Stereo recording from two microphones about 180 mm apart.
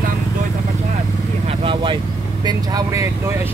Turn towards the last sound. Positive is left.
turn(degrees=-15)  # may be behind; listen again after turning